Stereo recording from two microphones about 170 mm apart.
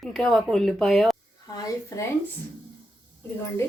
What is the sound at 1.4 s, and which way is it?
Speech, 20° left (ahead or behind).